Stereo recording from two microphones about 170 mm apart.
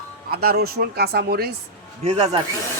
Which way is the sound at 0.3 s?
65° right (ahead or behind).